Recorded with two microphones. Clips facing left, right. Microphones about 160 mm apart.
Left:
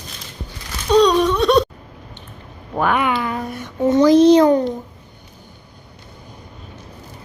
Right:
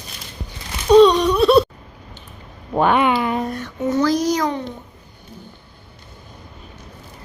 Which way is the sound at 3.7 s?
30° left (ahead or behind).